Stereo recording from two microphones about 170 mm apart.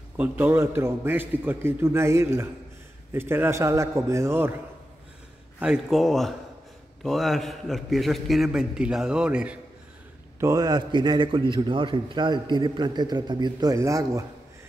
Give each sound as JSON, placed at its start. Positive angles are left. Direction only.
{"t": 0.2, "sound": "a man's voice", "side_deg": -10}
{"t": 5.6, "sound": "a man's voice", "side_deg": -5}
{"t": 10.4, "sound": "a man's voice", "side_deg": -20}